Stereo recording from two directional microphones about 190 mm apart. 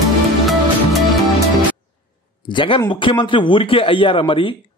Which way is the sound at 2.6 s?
25° left (ahead or behind).